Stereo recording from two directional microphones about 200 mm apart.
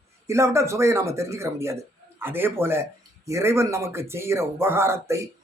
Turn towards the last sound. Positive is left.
turn(degrees=-15)  # may be behind; listen again after turning